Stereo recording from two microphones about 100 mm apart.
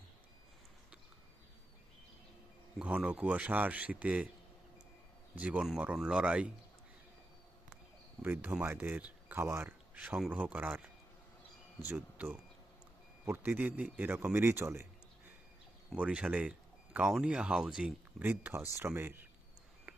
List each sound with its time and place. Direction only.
2.7 s speech: 10° right (ahead or behind)
5.3 s speech: 10° right (ahead or behind)
8.2 s speech: 20° right (ahead or behind)
9.9 s speech: 15° right (ahead or behind)
16.0 s speech: 10° right (ahead or behind)
18.2 s speech: 20° right (ahead or behind)
19.9 s a sound: 15° right (ahead or behind)